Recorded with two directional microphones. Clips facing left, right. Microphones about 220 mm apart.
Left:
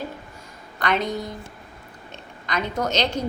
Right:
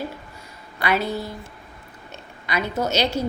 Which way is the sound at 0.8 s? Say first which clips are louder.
Right 1 dB; 5° right (ahead or behind).